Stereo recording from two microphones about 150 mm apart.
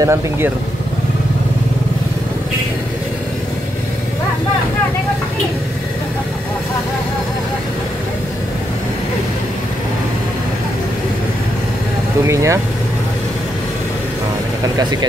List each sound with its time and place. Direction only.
0.0 s speech: 15° right (ahead or behind)
12.3 s speech: 20° right (ahead or behind)
14.8 s speech: 25° right (ahead or behind)